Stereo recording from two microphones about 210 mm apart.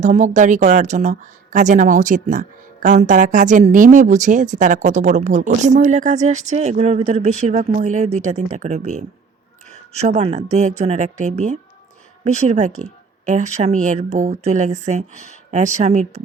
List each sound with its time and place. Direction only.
0.0 s speech: 35° right (ahead or behind)